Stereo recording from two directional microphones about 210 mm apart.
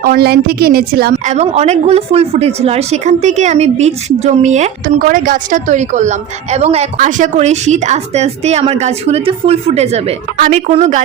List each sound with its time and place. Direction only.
0.0 s a woman's voice: 45° right (ahead or behind); by 11.0 s 30° right (ahead or behind)